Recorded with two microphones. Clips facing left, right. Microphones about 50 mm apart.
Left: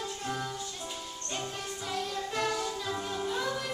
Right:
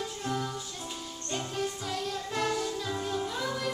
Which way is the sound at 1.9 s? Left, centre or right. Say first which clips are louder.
Even; centre.